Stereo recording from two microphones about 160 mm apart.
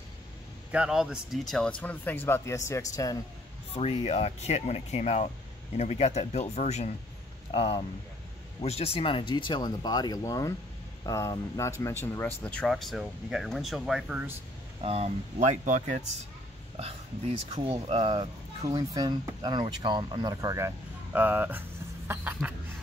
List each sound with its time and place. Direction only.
0.7 s speech: 5° right (ahead or behind); by 3.2 s 20° left (ahead or behind)
3.7 s speech: 40° left (ahead or behind); by 12.3 s 15° left (ahead or behind)
12.4 s speech: 5° left (ahead or behind)
14.8 s speech: 40° right (ahead or behind); by 22.5 s 15° right (ahead or behind)